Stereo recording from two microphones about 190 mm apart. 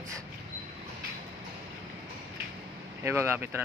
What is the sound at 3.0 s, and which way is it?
Speech, 15° right (ahead or behind).